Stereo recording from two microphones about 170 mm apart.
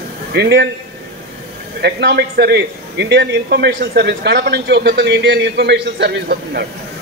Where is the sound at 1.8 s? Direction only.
75° right (ahead or behind).